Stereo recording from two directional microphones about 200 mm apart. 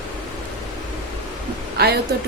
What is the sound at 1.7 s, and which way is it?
Speech, 55° right (ahead or behind).